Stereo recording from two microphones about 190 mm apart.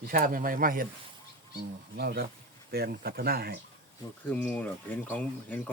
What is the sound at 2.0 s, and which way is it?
Speech, 60° right (ahead or behind).